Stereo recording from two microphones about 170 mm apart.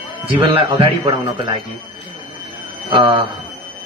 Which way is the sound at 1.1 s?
20° right (ahead or behind).